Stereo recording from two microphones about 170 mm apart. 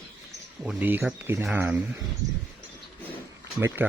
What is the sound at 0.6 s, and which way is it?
Speech, 10° right (ahead or behind).